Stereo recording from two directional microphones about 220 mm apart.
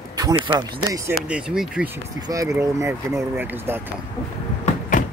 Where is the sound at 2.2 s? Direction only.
15° right (ahead or behind).